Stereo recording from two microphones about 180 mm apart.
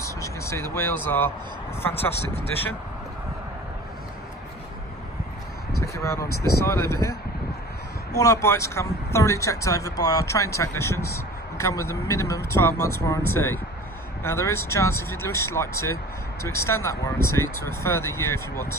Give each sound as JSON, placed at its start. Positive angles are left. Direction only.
{"t": 0.0, "sound": "vehicle", "side_deg": 15}
{"t": 5.9, "sound": "speech", "side_deg": 15}